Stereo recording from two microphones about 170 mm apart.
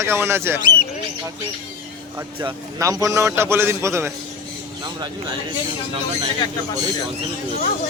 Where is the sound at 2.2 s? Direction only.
20° right (ahead or behind).